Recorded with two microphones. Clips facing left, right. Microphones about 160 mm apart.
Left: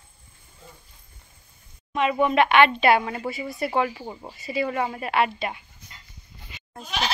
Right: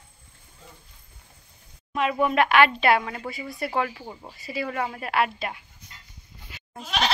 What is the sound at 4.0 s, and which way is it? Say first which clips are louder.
Speech: left 3 dB; 15° left (ahead or behind).